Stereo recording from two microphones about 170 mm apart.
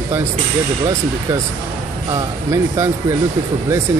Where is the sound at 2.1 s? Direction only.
15° right (ahead or behind).